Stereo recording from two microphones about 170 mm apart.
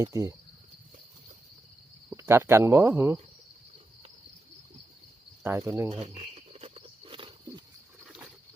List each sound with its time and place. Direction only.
0.0 s speech: 20° right (ahead or behind)
2.0 s speech: 15° right (ahead or behind)
5.4 s cricket: 15° right (ahead or behind)
5.9 s a sound: 40° right (ahead or behind)